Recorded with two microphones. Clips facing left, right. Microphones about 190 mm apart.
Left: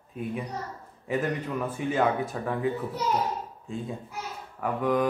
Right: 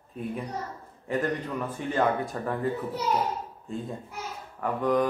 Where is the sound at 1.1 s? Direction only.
5° left (ahead or behind).